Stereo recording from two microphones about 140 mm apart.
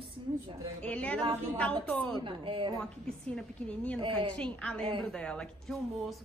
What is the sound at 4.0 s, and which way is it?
Speech, 35° right (ahead or behind).